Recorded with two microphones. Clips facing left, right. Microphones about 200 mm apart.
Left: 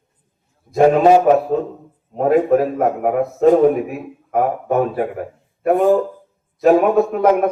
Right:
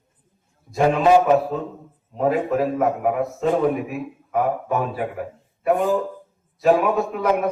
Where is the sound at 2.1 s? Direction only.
50° left (ahead or behind).